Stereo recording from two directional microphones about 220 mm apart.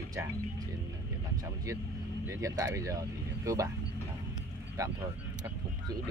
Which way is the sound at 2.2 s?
15° right (ahead or behind).